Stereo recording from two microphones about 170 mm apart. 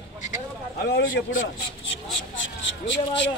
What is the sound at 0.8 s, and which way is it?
A man's voice, 85° left.